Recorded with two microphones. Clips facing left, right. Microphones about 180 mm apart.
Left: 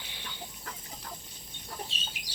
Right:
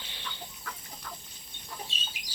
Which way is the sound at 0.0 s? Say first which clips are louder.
Left 1 dB; 10° left (ahead or behind).